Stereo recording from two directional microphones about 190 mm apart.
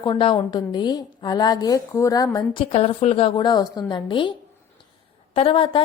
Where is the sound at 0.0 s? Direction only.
25° left (ahead or behind).